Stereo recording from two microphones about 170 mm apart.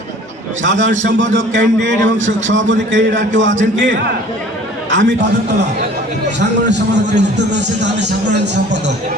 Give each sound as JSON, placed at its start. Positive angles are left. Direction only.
{"t": 0.6, "sound": "a man's voice", "side_deg": -90}
{"t": 4.9, "sound": "a man's voice", "side_deg": -90}